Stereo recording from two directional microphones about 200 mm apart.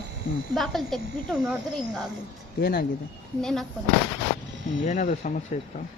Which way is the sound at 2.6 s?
50° left (ahead or behind).